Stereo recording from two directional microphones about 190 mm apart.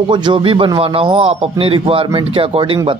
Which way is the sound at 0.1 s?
25° right (ahead or behind).